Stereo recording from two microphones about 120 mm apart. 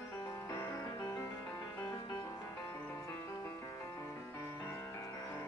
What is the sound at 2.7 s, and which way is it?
Music, 20° left (ahead or behind).